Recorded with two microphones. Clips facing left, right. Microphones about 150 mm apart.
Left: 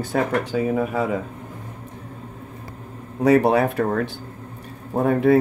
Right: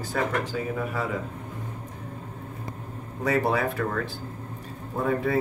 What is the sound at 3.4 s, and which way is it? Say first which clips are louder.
Speech: left 7 dB; 70° left (ahead or behind).